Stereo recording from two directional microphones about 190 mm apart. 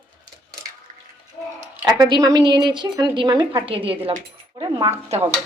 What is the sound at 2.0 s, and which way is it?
A woman's voice, 20° right (ahead or behind).